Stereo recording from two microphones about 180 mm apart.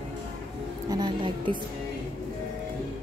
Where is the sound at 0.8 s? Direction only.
25° right (ahead or behind).